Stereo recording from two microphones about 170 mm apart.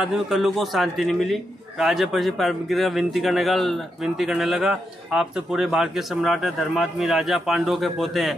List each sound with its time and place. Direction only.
0.0 s a man's voice: centre (ahead or behind)